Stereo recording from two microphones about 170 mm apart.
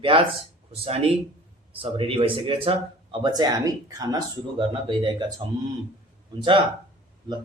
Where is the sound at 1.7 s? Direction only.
30° right (ahead or behind).